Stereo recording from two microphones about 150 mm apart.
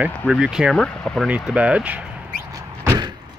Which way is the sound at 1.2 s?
10° right (ahead or behind).